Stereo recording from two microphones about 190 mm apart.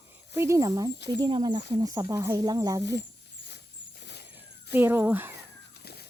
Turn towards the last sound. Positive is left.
turn(degrees=55)  # may be behind; listen again after turning